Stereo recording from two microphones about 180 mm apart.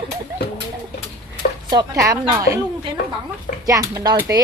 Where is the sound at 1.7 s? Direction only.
20° right (ahead or behind).